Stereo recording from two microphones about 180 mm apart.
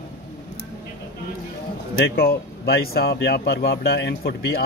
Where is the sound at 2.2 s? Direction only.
60° left (ahead or behind).